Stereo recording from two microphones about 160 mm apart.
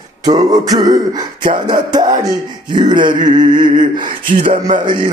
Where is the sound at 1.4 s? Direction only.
60° right (ahead or behind).